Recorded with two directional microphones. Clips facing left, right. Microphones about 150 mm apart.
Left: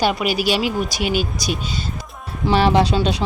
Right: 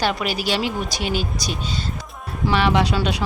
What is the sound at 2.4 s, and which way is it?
Speech, 35° left (ahead or behind).